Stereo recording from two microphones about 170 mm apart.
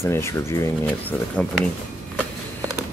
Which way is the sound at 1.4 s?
5° left (ahead or behind).